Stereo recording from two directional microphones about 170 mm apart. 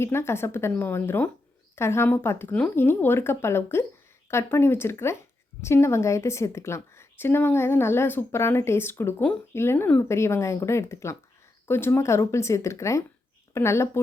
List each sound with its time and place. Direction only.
0.0 s a woman's voice: 15° left (ahead or behind)